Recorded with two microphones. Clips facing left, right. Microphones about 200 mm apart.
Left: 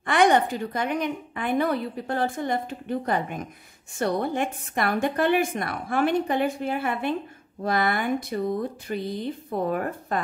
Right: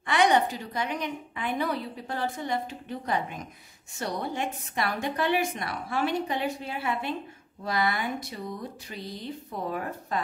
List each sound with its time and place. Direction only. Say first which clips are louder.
0.0 s a woman's voice: left 3 dB; 50° left (ahead or behind)